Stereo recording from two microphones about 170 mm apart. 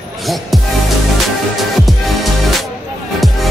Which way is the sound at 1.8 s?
Centre (ahead or behind).